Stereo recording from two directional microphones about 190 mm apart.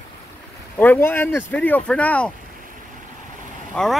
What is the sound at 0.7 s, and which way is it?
Speech, 10° left (ahead or behind).